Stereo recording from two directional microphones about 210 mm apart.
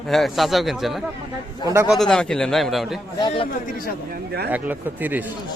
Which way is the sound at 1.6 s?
15° right (ahead or behind).